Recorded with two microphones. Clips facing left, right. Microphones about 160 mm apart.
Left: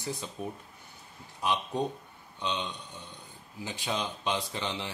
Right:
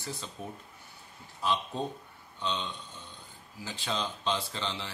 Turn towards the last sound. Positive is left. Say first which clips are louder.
# left 2 dB
turn(degrees=15)  # may be behind; listen again after turning